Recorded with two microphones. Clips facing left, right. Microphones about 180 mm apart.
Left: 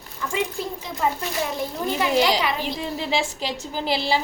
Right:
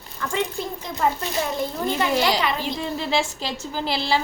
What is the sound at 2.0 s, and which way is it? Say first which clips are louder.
A woman's voice: left 2 dB; 15° left (ahead or behind).